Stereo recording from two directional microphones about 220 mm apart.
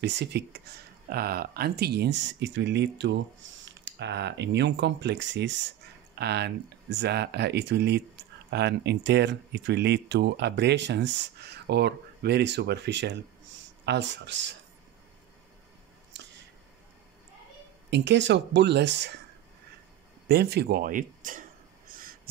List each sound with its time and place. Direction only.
0.0 s speech: 50° right (ahead or behind)
17.8 s speech: 50° right (ahead or behind)
20.2 s a sound: 50° right (ahead or behind)